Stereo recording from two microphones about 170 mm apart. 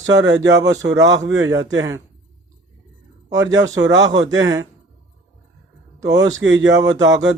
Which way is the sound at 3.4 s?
20° right (ahead or behind).